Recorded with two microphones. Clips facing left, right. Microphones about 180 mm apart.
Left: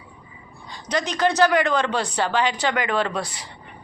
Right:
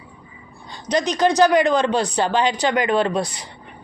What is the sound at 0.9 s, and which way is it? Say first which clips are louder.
A woman's voice: right 4 dB; 15° right (ahead or behind).